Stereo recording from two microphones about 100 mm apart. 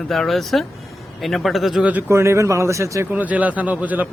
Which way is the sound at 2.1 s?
25° right (ahead or behind).